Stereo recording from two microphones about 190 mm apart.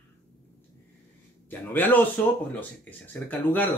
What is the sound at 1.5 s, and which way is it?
Speech, 10° left (ahead or behind).